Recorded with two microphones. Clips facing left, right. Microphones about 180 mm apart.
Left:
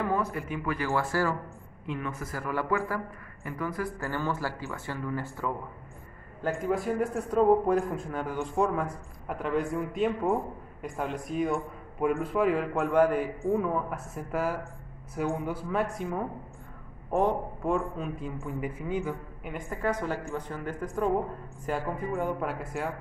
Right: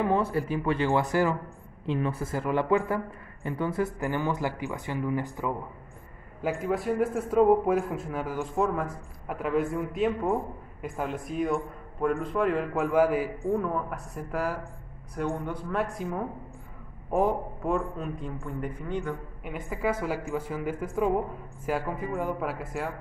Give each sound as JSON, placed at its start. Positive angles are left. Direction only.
{"t": 0.0, "sound": "speech", "side_deg": -25}
{"t": 1.9, "sound": "speech", "side_deg": -30}
{"t": 6.4, "sound": "a man's voice", "side_deg": 0}